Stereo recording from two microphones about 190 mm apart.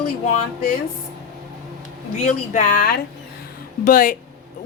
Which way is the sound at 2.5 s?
45° left (ahead or behind).